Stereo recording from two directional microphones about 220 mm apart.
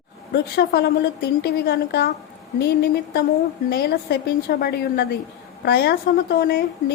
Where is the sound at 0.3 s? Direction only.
50° left (ahead or behind).